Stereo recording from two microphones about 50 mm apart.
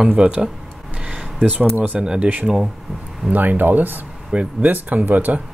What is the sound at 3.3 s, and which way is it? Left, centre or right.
Speech, right.